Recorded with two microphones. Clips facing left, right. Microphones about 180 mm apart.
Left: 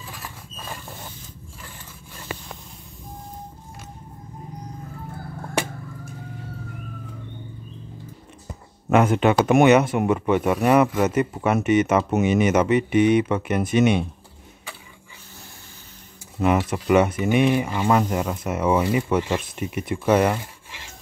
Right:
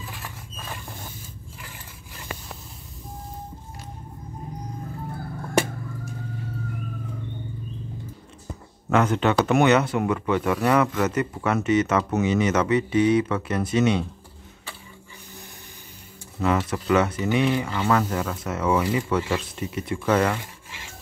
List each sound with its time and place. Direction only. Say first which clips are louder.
8.8 s speech: left 3 dB; 20° left (ahead or behind)
16.3 s speech: left 3 dB; 15° left (ahead or behind)